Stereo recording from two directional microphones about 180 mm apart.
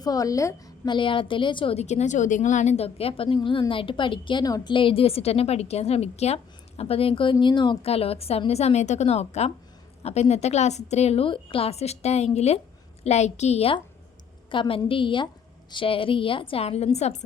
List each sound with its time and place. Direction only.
0.0 s a woman's voice: 20° left (ahead or behind); by 17.2 s 40° left (ahead or behind)